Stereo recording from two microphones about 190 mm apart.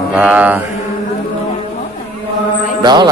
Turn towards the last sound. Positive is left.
turn(degrees=-20)  # may be behind; listen again after turning